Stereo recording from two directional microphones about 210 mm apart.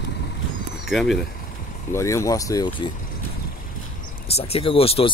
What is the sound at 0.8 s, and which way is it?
Speech, centre (ahead or behind).